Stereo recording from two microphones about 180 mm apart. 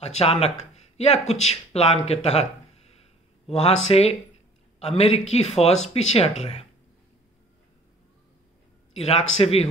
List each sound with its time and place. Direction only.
0.0 s speech: 35° left (ahead or behind)
3.4 s a man's voice: 35° left (ahead or behind)
8.9 s a man's voice: 35° left (ahead or behind)